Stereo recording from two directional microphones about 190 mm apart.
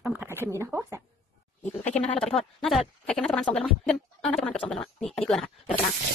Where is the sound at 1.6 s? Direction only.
35° left (ahead or behind).